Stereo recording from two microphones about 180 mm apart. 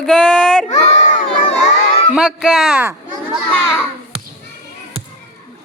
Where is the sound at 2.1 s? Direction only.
5° right (ahead or behind).